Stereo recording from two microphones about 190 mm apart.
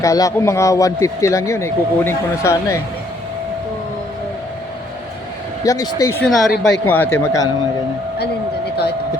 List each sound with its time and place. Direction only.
0.0 s speech: 15° left (ahead or behind)
5.6 s speech: 15° left (ahead or behind)
6.2 s a woman's voice: centre (ahead or behind); by 7.5 s 15° left (ahead or behind)